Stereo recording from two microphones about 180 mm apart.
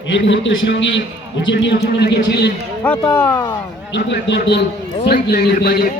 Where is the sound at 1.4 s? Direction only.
80° left.